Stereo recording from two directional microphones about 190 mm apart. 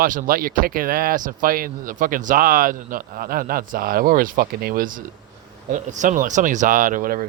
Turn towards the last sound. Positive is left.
turn(degrees=-45)  # may be behind; listen again after turning